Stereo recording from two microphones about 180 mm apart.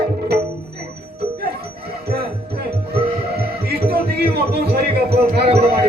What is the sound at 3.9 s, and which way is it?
Music, 65° right (ahead or behind).